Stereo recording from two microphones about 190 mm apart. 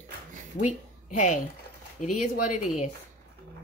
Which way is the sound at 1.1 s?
40° left (ahead or behind).